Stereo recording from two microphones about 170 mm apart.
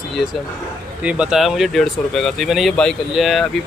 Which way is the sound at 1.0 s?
5° right (ahead or behind).